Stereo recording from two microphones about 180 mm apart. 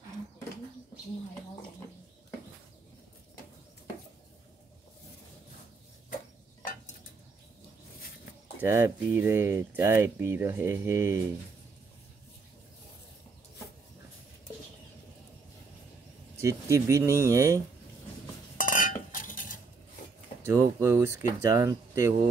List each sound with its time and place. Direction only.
8.5 s speech: 15° right (ahead or behind)
16.3 s speech: 20° right (ahead or behind)
18.6 s a sound: 50° left (ahead or behind)
19.1 s cutlery: 50° left (ahead or behind)
20.4 s speech: 15° right (ahead or behind)